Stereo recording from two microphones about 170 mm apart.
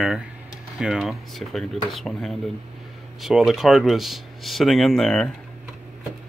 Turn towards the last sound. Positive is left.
turn(degrees=5)  # may be behind; listen again after turning